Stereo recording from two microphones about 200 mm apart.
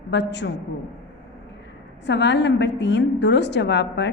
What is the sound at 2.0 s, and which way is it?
A woman's voice, 60° left (ahead or behind).